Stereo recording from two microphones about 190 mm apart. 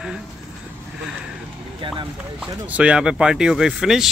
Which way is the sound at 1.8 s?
25° right (ahead or behind).